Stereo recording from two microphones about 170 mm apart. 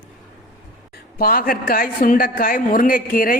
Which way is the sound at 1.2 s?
60° left (ahead or behind).